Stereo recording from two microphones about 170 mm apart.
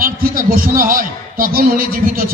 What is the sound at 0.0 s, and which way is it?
A man's voice, 55° right (ahead or behind).